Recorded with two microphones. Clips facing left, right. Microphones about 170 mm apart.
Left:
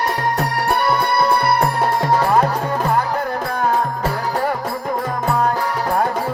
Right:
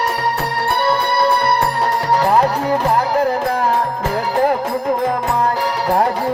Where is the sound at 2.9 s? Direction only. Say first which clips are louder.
Right 5 dB; 35° right (ahead or behind).